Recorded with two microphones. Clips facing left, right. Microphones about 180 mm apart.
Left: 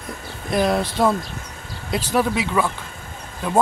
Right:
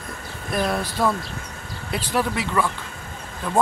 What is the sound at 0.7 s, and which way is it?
Speech, 25° left (ahead or behind).